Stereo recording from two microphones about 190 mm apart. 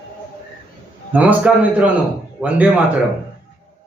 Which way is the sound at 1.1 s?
5° right (ahead or behind).